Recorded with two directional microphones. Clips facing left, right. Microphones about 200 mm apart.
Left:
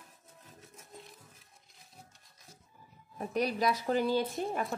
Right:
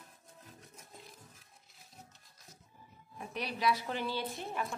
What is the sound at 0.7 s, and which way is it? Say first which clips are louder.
Music: left 3 dB; centre (ahead or behind).